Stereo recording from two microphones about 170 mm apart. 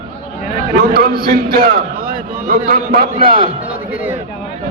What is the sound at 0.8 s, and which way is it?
A man's voice, 60° right (ahead or behind).